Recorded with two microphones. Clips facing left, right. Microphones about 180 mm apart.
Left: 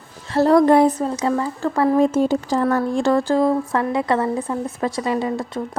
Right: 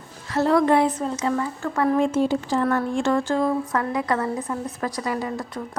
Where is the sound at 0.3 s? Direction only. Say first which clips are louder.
Left 5 dB; 35° left (ahead or behind).